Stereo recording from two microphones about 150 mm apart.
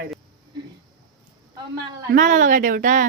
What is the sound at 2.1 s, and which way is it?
Speech, 60° right (ahead or behind).